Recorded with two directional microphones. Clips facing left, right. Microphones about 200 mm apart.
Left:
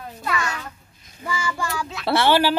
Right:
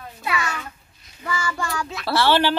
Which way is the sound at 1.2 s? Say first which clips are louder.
Even; 15° left (ahead or behind).